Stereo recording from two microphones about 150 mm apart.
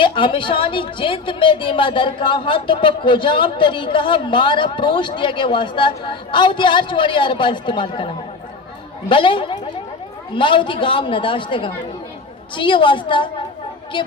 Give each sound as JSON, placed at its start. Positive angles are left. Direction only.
{"t": 0.0, "sound": "a woman's voice", "side_deg": 35}